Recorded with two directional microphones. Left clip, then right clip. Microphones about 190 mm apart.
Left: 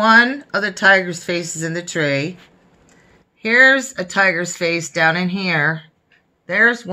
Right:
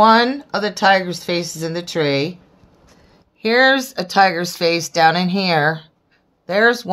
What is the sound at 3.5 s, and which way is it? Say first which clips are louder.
A woman's voice: left 2 dB; 50° right (ahead or behind).